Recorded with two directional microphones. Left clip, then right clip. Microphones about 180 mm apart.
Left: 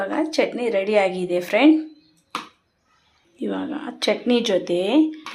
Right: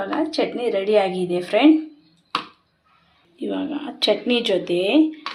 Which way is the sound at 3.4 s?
20° left (ahead or behind).